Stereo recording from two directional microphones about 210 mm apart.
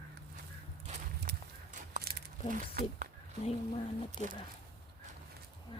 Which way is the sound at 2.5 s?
45° right (ahead or behind).